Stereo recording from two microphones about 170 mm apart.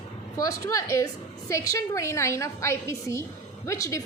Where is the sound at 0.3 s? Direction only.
20° left (ahead or behind).